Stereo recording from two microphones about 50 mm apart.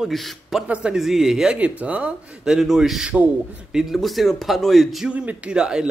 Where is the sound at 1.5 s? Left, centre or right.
Right.